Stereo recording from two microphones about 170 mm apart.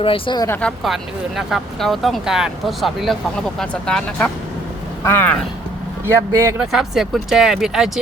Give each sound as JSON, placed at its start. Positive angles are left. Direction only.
{"t": 0.0, "sound": "speech", "side_deg": 30}
{"t": 0.4, "sound": "speech", "side_deg": 10}
{"t": 1.4, "sound": "speech", "side_deg": 0}
{"t": 6.3, "sound": "speech", "side_deg": -15}
{"t": 6.6, "sound": "speech", "side_deg": 0}